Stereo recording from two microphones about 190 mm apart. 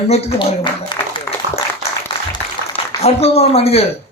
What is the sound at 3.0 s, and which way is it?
Speech, 30° left (ahead or behind).